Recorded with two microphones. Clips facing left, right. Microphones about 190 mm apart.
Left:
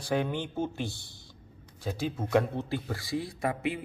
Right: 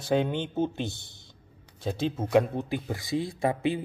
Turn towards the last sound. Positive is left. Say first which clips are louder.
# right 4 dB
turn(degrees=-30)  # may be behind; listen again after turning